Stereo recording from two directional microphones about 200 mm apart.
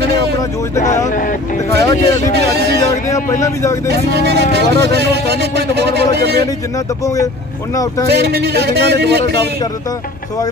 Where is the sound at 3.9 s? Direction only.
55° right (ahead or behind).